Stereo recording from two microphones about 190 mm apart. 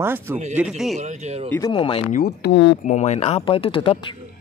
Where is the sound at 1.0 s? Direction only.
35° right (ahead or behind).